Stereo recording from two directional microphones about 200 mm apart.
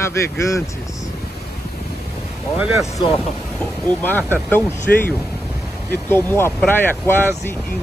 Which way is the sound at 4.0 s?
10° left (ahead or behind).